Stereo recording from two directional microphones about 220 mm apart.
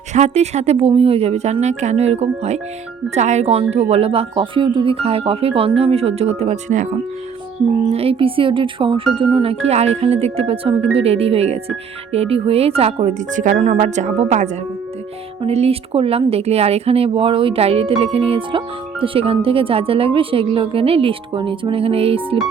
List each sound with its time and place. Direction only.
0.1 s speech: 30° right (ahead or behind)
7.9 s speech: 25° right (ahead or behind)